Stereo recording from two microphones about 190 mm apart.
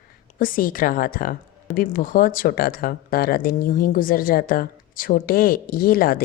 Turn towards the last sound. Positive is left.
turn(degrees=50)  # may be behind; listen again after turning